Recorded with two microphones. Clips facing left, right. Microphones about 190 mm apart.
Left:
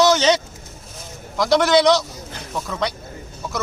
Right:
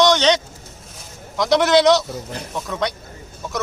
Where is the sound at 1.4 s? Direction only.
Centre (ahead or behind).